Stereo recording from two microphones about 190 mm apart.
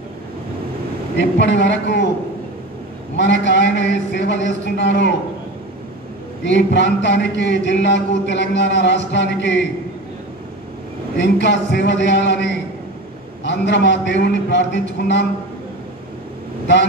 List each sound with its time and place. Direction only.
1.1 s a man's voice: 65° left (ahead or behind)
3.2 s a man's voice: 70° left (ahead or behind)
6.4 s a man's voice: 70° left (ahead or behind)
11.1 s a man's voice: 65° left (ahead or behind)